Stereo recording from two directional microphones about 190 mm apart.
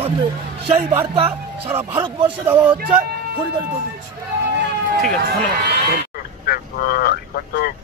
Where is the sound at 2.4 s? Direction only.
10° right (ahead or behind).